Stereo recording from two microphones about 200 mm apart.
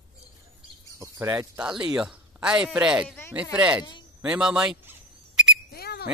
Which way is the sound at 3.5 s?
5° right (ahead or behind).